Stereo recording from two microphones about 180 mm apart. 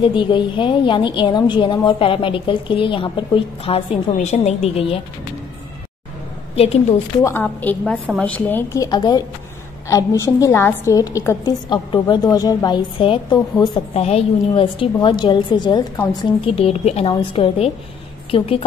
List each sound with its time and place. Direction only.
0.0 s a woman's voice: 25° left (ahead or behind)
6.5 s a woman's voice: 35° left (ahead or behind)
7.2 s a woman's voice: 15° left (ahead or behind); by 18.6 s 30° left (ahead or behind)